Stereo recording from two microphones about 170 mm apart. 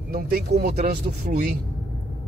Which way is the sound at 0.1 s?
60° right (ahead or behind).